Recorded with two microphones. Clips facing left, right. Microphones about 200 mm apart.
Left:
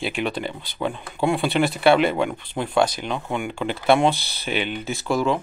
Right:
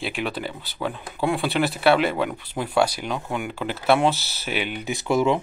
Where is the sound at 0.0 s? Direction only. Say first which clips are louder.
Left 2 dB; centre (ahead or behind).